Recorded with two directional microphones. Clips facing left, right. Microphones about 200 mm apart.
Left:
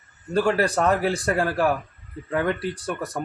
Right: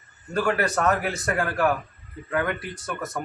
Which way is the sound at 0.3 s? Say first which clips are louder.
Left 3 dB; 30° left (ahead or behind).